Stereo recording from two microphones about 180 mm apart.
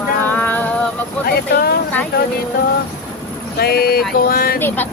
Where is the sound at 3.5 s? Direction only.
60° left (ahead or behind).